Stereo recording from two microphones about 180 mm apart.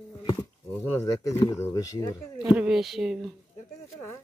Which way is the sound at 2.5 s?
5° right (ahead or behind).